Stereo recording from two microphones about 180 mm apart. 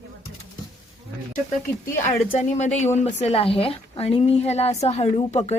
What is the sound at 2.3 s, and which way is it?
Speech, 40° left (ahead or behind).